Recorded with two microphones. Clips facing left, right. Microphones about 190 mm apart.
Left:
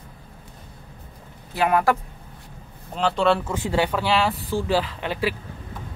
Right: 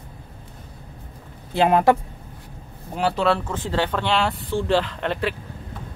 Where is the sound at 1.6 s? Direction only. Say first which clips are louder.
Right 3 dB; 25° right (ahead or behind).